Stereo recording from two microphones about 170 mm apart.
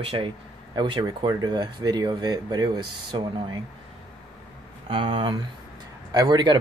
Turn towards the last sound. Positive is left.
turn(degrees=-25)  # may be behind; listen again after turning